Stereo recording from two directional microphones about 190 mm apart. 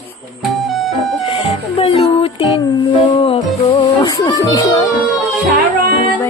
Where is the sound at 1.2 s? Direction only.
30° left (ahead or behind).